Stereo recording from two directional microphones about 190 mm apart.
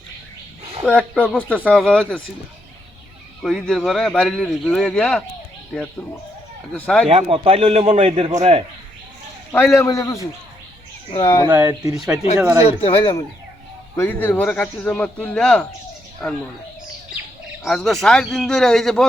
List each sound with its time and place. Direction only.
0.9 s speech: 5° left (ahead or behind)
3.4 s speech: centre (ahead or behind)
7.1 s a man's voice: 30° right (ahead or behind)
9.5 s speech: 15° left (ahead or behind)
11.1 s speech: 30° left (ahead or behind)
11.4 s speech: 10° right (ahead or behind)
12.6 s speech: 30° left (ahead or behind)
13.9 s speech: 10° left (ahead or behind)
17.6 s speech: centre (ahead or behind)